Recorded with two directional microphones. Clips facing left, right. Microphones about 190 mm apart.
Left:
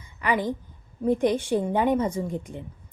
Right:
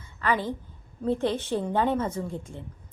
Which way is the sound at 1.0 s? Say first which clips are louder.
Left 4 dB; 15° left (ahead or behind).